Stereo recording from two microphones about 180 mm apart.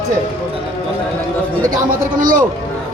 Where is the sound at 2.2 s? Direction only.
45° right (ahead or behind).